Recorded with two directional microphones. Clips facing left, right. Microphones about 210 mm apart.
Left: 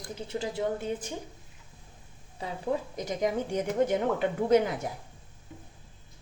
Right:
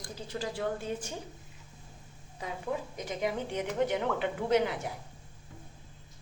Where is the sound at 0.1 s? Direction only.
25° left (ahead or behind).